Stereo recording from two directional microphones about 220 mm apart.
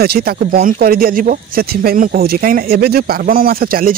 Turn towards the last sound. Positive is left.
turn(degrees=-40)  # may be behind; listen again after turning